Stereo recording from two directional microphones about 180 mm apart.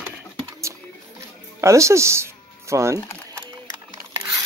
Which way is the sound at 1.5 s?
15° right (ahead or behind).